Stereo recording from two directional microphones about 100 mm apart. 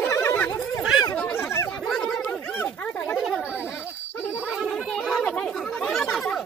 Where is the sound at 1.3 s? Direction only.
25° left (ahead or behind).